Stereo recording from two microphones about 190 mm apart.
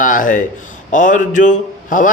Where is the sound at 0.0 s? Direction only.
45° left (ahead or behind).